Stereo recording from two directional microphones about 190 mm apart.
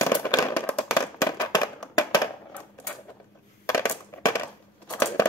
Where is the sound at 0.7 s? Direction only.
5° left (ahead or behind).